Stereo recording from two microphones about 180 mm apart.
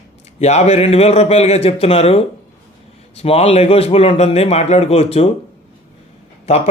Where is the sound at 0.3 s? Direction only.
35° left (ahead or behind).